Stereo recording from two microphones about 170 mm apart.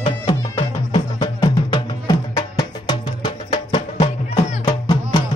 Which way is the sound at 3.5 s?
35° left (ahead or behind).